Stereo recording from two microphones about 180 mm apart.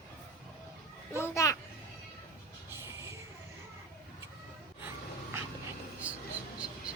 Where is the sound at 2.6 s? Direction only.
15° right (ahead or behind).